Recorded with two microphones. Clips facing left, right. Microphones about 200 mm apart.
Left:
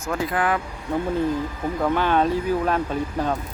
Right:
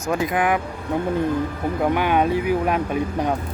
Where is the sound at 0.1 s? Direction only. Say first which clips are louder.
Right 3 dB; 15° right (ahead or behind).